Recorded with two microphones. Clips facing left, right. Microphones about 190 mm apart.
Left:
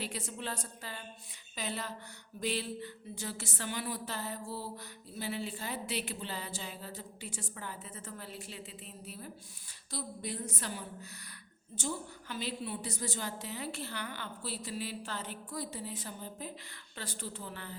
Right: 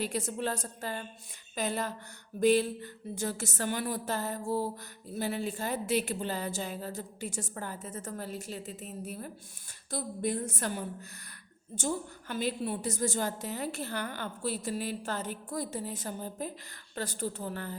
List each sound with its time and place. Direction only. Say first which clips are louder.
0.0 s a woman's voice: right 7 dB; 45° right (ahead or behind)